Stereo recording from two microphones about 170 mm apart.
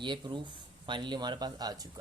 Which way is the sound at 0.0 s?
30° right (ahead or behind).